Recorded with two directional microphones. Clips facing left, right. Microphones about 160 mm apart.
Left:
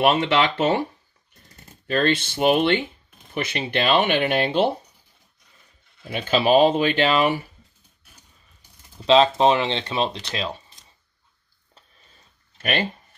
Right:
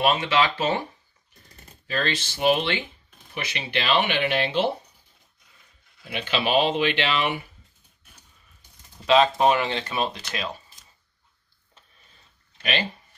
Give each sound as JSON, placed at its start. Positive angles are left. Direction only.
{"t": 0.0, "sound": "speech", "side_deg": 60}
{"t": 1.9, "sound": "speech", "side_deg": 55}
{"t": 6.0, "sound": "speech", "side_deg": 40}
{"t": 9.0, "sound": "speech", "side_deg": 25}
{"t": 12.5, "sound": "a sound", "side_deg": 50}